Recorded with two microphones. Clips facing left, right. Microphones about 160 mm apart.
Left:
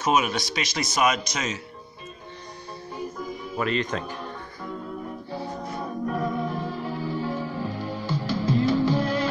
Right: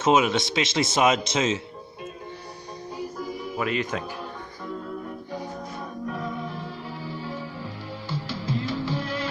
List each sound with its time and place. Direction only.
0.0 s speech: 20° right (ahead or behind)
3.2 s music: 10° right (ahead or behind)
6.0 s music: 50° left (ahead or behind)